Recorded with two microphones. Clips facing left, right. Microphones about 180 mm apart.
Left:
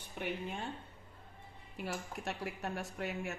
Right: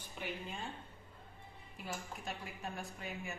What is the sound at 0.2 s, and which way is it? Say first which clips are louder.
Speech: left 5 dB; 55° left (ahead or behind).